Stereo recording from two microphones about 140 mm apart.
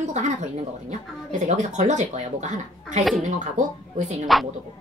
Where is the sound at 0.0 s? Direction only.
60° right (ahead or behind).